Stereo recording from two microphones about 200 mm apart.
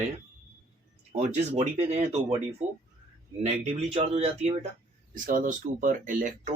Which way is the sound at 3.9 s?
30° right (ahead or behind).